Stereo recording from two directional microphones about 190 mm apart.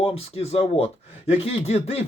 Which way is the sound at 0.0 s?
30° left (ahead or behind).